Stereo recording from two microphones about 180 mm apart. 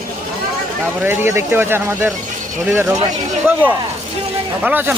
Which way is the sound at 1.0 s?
10° right (ahead or behind).